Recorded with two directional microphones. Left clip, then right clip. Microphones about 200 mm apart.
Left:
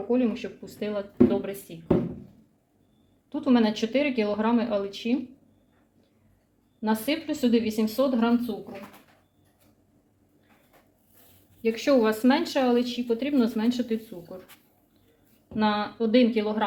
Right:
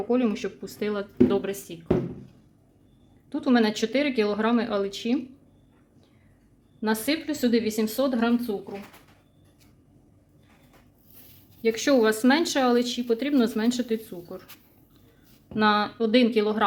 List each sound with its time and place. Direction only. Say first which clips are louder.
0.1 s speech: even; 45° right (ahead or behind)
3.2 s speech: right 1 dB; 35° right (ahead or behind)
6.8 s speech: right 1 dB; 35° right (ahead or behind)
11.6 s speech: right 1 dB; 35° right (ahead or behind)
15.5 s speech: right 4 dB; 40° right (ahead or behind)